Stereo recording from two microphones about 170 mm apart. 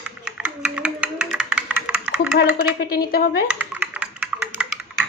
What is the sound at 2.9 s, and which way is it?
Speech, 65° left (ahead or behind).